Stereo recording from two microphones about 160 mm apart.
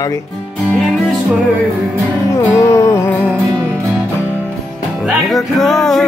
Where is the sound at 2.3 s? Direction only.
20° left (ahead or behind).